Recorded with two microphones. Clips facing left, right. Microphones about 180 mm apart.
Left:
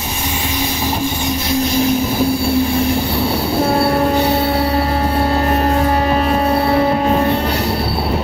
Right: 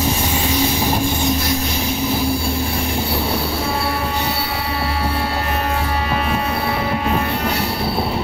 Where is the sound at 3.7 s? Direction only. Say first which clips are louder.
Left 8 dB; 50° left (ahead or behind).